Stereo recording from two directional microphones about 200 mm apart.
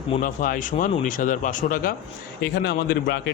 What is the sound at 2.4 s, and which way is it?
Speech, 55° left (ahead or behind).